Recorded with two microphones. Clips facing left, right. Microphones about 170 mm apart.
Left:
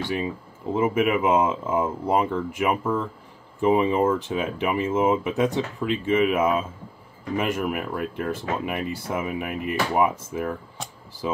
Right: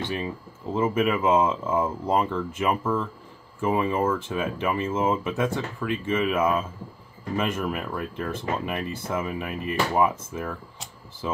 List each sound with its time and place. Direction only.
0.1 s speech: 15° left (ahead or behind)